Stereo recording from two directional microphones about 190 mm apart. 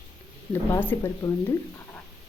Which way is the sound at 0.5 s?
10° left (ahead or behind).